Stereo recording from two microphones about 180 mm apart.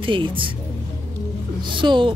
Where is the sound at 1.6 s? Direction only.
25° right (ahead or behind).